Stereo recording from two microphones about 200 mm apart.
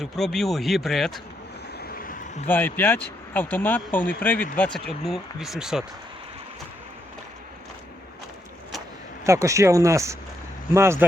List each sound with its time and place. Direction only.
0.0 s speech: centre (ahead or behind)
1.8 s vehicle: 45° left (ahead or behind)
2.5 s speech: 10° left (ahead or behind)
9.2 s speech: 15° right (ahead or behind)